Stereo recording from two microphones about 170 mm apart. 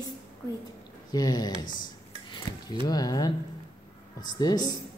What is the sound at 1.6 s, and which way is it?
Dishes, 25° left (ahead or behind).